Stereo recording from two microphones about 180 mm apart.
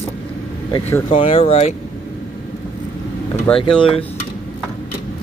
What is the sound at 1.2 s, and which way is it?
Speech, 35° left (ahead or behind).